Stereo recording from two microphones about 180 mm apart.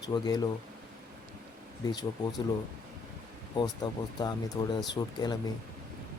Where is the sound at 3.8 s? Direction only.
25° left (ahead or behind).